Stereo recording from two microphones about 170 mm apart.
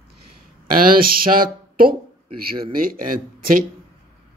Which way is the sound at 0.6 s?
55° right (ahead or behind).